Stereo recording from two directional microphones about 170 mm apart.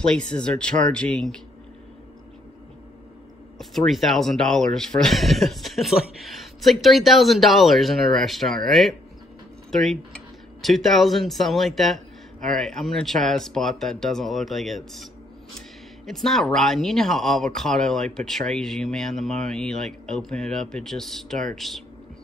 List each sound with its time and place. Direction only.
0.0 s speech: 5° left (ahead or behind)
3.5 s speech: centre (ahead or behind)
16.1 s speech: centre (ahead or behind)